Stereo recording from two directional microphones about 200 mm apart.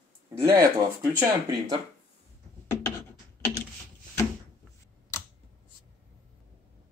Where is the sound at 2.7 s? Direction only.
15° left (ahead or behind).